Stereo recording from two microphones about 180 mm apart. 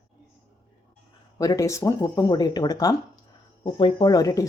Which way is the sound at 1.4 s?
20° left (ahead or behind).